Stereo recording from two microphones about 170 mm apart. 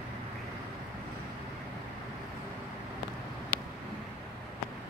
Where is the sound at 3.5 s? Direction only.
65° right (ahead or behind).